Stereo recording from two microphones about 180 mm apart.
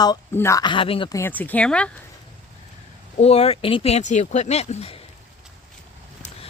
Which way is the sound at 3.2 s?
35° left (ahead or behind).